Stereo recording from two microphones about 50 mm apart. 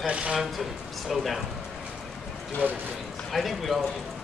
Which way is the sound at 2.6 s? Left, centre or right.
Right.